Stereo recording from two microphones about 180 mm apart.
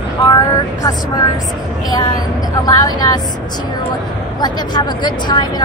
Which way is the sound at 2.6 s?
20° left (ahead or behind).